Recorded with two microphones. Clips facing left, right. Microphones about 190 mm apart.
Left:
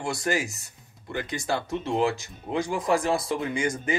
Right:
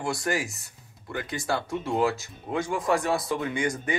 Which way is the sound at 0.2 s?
25° left (ahead or behind).